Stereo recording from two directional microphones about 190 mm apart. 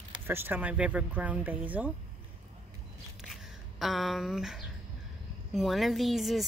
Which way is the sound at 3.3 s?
Centre (ahead or behind).